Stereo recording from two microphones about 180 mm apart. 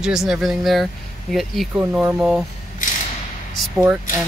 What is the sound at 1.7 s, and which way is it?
Speech, 10° right (ahead or behind).